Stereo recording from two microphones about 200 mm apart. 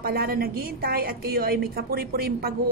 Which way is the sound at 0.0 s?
50° right (ahead or behind).